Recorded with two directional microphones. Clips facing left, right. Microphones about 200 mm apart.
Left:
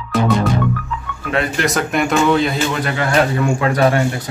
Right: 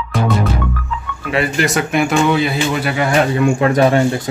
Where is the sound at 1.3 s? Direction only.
5° right (ahead or behind).